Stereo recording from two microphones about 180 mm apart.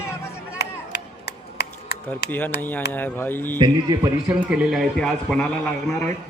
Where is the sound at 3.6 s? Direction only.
25° right (ahead or behind).